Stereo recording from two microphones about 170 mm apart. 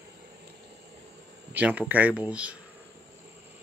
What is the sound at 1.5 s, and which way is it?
Speech, 10° right (ahead or behind).